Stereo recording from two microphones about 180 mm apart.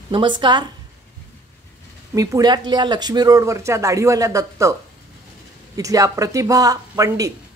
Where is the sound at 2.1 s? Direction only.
20° right (ahead or behind).